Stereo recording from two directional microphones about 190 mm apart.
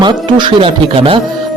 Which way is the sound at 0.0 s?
25° right (ahead or behind).